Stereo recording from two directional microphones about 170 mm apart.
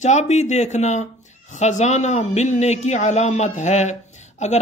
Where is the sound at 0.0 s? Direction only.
45° left (ahead or behind).